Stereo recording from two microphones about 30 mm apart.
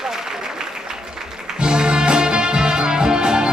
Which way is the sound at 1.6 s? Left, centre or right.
Right.